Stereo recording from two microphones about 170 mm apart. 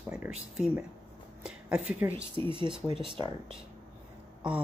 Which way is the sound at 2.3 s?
30° right (ahead or behind).